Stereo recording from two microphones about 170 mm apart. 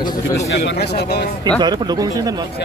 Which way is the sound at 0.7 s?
75° left (ahead or behind).